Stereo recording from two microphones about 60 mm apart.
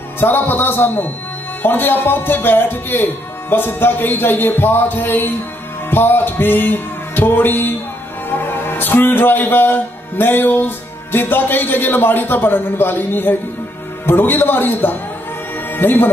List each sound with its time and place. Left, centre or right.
0.2 s speech: left
5.9 s music: left
8.3 s a man's voice: left